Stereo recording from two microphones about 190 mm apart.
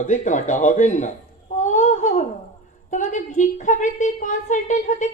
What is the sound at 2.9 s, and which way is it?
A man's voice, 40° left (ahead or behind).